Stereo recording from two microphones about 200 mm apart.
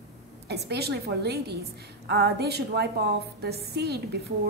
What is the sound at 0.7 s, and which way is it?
A woman's voice, 55° right (ahead or behind).